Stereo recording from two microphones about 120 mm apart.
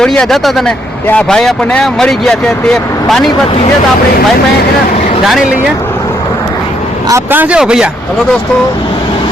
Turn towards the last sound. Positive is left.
turn(degrees=-5)  # may be behind; listen again after turning